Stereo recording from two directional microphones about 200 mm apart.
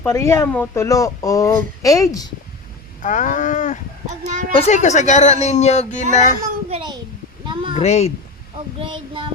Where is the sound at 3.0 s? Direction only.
40° left (ahead or behind).